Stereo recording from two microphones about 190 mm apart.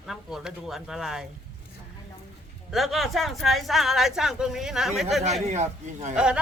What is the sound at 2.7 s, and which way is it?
Speech, centre (ahead or behind).